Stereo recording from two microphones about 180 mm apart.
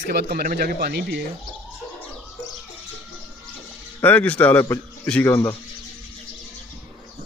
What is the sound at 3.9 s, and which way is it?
A man's voice, 10° left (ahead or behind).